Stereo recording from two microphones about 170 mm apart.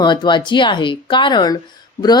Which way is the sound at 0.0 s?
25° left (ahead or behind).